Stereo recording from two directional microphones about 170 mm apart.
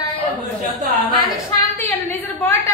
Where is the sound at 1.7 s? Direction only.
10° left (ahead or behind).